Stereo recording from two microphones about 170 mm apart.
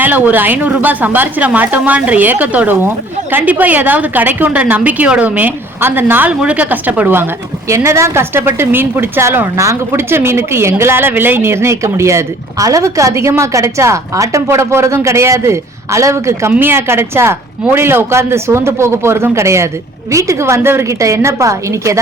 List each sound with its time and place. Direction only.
0.0 s speech: 10° right (ahead or behind)